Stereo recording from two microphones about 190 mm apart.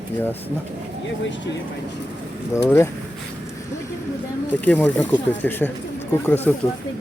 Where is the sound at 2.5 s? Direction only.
15° left (ahead or behind).